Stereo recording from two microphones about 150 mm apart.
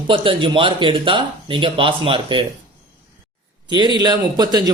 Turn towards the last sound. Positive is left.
turn(degrees=-25)  # may be behind; listen again after turning